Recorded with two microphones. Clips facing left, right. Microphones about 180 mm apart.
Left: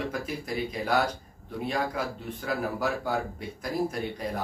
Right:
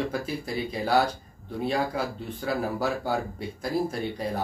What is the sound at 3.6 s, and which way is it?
Speech, 30° right (ahead or behind).